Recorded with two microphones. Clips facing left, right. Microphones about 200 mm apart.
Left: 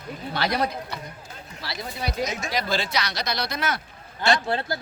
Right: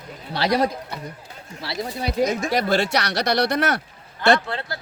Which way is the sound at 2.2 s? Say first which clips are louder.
Right 9 dB; 55° right (ahead or behind).